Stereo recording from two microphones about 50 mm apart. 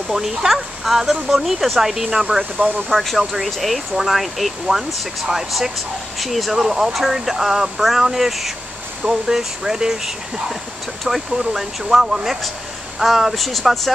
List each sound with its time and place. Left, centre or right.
0.1 s speech: centre
2.9 s speech: centre
9.0 s speech: centre